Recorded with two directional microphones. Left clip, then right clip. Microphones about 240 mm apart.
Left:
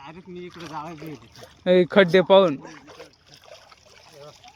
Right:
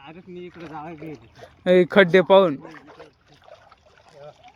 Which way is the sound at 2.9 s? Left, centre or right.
Left.